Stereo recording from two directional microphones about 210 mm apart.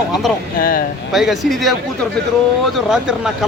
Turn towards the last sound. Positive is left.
turn(degrees=-5)  # may be behind; listen again after turning